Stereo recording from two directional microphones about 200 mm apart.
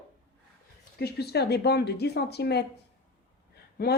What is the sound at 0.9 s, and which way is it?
Speech, 55° left (ahead or behind).